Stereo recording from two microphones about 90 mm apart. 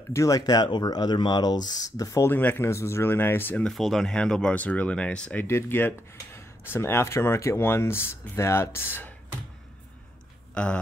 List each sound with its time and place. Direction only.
0.1 s speech: 35° left (ahead or behind)
0.4 s speech: 50° left (ahead or behind)
2.2 s speech: 20° left (ahead or behind)
3.6 s speech: centre (ahead or behind)
5.4 s speech: 25° left (ahead or behind)
10.5 s speech: 10° left (ahead or behind)